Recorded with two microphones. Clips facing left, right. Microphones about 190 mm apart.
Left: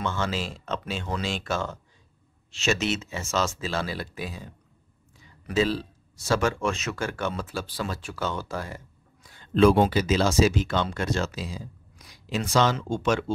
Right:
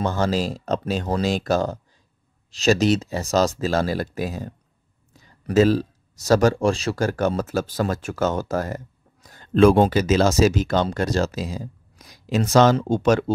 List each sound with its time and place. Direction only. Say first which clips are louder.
0.0 s speech: right 7 dB; 40° right (ahead or behind)